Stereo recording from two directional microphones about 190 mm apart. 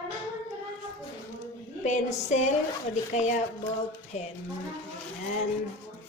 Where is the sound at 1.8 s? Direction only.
40° left (ahead or behind).